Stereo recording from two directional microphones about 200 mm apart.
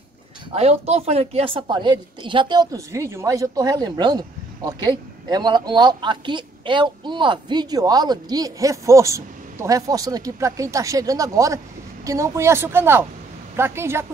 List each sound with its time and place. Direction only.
0.5 s a woman's voice: 30° right (ahead or behind); by 14.0 s 10° right (ahead or behind)